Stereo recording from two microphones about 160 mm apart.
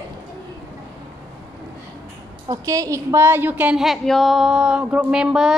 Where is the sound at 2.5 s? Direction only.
20° right (ahead or behind); by 5.5 s 5° right (ahead or behind).